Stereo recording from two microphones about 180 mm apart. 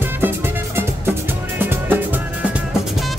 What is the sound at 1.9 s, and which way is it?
Music, 10° right (ahead or behind).